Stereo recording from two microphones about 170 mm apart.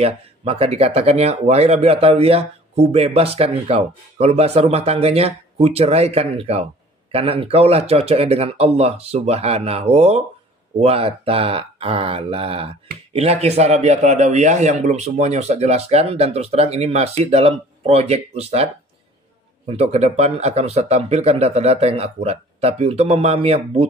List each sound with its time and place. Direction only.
0.0 s speech: 35° right (ahead or behind)
19.7 s speech: 40° right (ahead or behind)